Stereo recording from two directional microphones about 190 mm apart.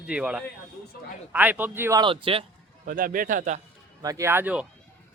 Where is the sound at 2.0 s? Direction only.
30° right (ahead or behind).